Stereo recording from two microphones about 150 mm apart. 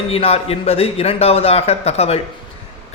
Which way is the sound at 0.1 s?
40° left (ahead or behind).